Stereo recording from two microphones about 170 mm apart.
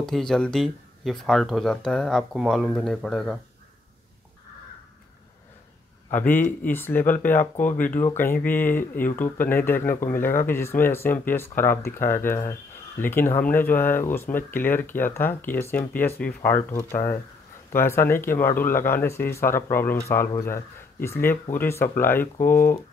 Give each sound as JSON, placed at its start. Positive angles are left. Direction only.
{"t": 0.0, "sound": "speech", "side_deg": 5}
{"t": 6.1, "sound": "speech", "side_deg": 10}